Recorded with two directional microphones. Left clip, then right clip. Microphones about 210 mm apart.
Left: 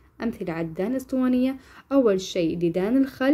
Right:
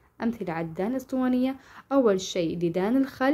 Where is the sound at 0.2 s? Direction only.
5° right (ahead or behind).